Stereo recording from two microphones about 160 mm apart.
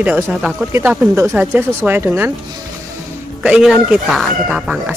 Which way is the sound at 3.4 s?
5° right (ahead or behind).